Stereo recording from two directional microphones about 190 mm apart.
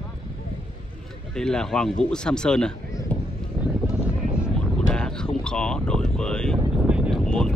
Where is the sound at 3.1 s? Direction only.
5° left (ahead or behind).